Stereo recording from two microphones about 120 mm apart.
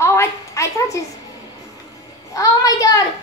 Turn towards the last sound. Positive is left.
turn(degrees=30)  # may be behind; listen again after turning